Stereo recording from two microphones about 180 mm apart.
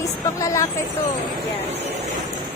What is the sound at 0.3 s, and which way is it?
Speech, 15° left (ahead or behind).